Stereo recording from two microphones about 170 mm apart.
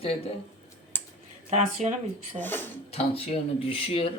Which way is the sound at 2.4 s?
10° left (ahead or behind).